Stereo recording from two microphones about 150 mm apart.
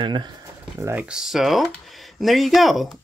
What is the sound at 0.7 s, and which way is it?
Speech, 15° right (ahead or behind).